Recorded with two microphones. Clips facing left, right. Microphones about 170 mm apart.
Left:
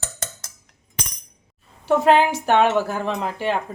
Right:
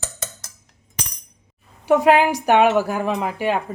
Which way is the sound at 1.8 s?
10° right (ahead or behind).